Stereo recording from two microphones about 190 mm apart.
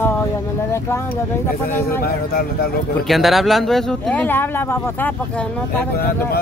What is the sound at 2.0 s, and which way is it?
Speech, 55° left (ahead or behind).